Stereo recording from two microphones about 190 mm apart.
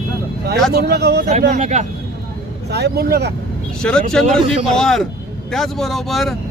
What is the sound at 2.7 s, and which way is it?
Speech, 55° right (ahead or behind).